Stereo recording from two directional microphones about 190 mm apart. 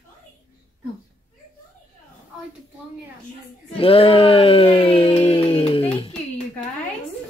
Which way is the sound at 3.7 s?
30° left (ahead or behind).